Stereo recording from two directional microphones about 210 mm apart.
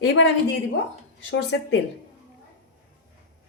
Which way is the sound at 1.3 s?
55° left (ahead or behind).